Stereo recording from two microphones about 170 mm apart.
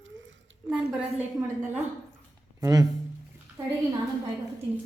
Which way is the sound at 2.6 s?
20° right (ahead or behind).